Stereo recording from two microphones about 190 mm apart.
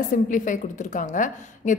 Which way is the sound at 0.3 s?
45° left (ahead or behind).